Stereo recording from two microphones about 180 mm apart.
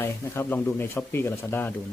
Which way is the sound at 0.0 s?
15° left (ahead or behind).